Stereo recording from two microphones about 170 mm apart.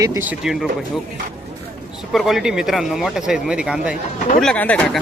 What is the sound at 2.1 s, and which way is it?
Speech, centre (ahead or behind).